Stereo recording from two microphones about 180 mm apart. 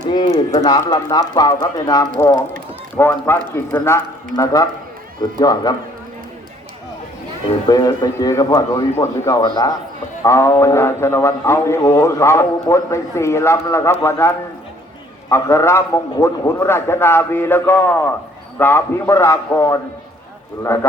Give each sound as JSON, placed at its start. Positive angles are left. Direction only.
{"t": 0.1, "sound": "a man's voice", "side_deg": 20}
{"t": 7.7, "sound": "a man's voice", "side_deg": 20}